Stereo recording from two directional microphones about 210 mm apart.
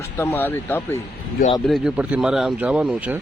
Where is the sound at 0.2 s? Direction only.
10° left (ahead or behind).